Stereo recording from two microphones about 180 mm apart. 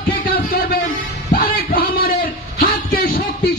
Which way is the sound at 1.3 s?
55° left (ahead or behind).